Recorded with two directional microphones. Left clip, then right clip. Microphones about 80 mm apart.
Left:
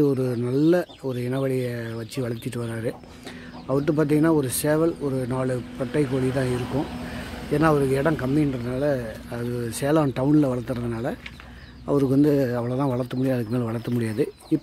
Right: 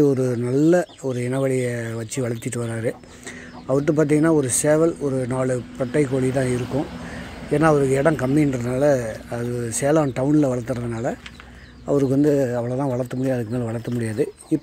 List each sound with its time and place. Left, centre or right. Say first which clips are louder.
0.0 s speech: right 4 dB; right
8.2 s speech: right 4 dB; right
9.5 s speech: right 3 dB; centre